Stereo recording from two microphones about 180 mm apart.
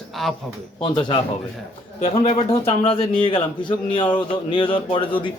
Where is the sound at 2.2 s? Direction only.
35° left (ahead or behind).